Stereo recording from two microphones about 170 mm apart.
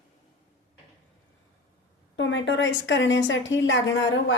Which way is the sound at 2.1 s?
90° left.